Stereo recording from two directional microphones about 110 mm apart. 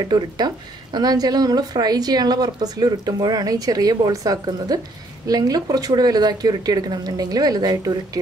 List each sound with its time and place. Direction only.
0.0 s a woman's voice: 40° right (ahead or behind)